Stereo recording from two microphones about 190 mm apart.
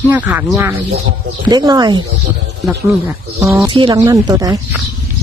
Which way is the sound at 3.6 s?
25° right (ahead or behind).